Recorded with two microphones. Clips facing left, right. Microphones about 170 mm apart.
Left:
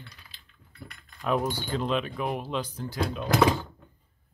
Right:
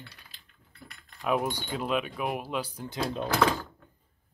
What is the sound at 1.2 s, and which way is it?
Speech, 10° right (ahead or behind).